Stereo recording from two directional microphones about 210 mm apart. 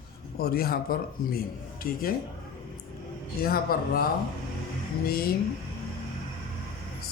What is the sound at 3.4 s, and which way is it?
Speech, 45° left (ahead or behind).